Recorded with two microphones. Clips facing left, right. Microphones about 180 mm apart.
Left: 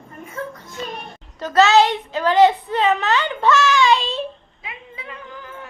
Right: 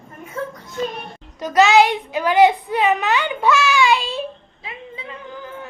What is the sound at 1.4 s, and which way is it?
A child's voice, 15° right (ahead or behind).